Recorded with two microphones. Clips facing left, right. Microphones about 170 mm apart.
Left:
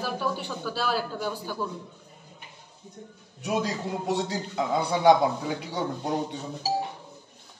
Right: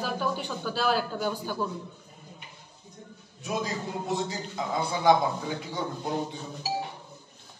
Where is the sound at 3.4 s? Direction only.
75° left (ahead or behind).